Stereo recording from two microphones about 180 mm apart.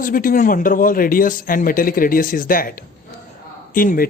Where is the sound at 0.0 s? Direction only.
50° left (ahead or behind).